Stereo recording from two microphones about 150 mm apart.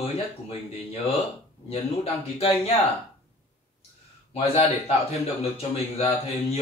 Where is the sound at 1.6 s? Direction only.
40° left (ahead or behind).